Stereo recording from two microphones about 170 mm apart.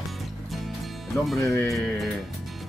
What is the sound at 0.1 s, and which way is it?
Music, centre (ahead or behind).